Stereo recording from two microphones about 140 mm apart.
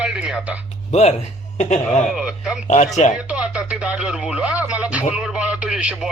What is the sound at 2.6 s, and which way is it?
Speech, 55° left (ahead or behind).